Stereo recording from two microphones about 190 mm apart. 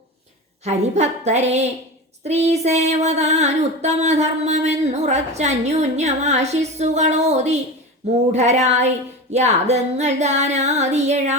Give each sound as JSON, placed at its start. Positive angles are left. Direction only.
{"t": 0.6, "sound": "music", "side_deg": -35}